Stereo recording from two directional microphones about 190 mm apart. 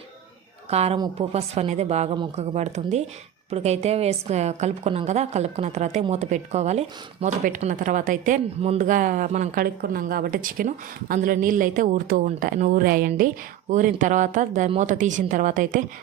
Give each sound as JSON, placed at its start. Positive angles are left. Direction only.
{"t": 0.7, "sound": "a woman's voice", "side_deg": -35}
{"t": 0.9, "sound": "a woman's voice", "side_deg": -20}
{"t": 1.3, "sound": "a woman's voice", "side_deg": -35}
{"t": 9.6, "sound": "speech", "side_deg": -50}